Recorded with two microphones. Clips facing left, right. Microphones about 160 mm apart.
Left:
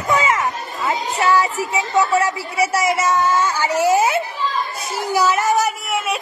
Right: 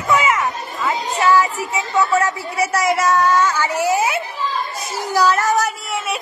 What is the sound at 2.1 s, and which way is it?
A woman's voice, 10° left (ahead or behind).